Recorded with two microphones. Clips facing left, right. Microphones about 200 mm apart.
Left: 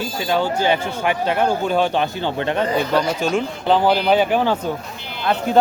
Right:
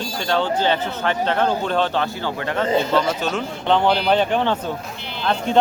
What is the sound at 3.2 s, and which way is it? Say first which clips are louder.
A man's voice: left 4 dB; 10° left (ahead or behind).